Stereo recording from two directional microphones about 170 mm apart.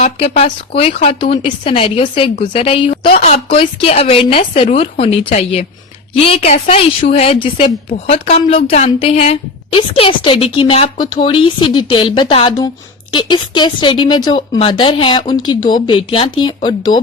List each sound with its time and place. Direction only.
0.0 s a woman's voice: 35° left (ahead or behind)